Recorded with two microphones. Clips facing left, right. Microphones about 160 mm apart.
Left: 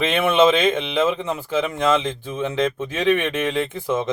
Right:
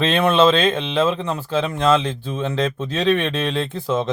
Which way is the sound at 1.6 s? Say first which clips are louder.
Right 3 dB; 15° left (ahead or behind).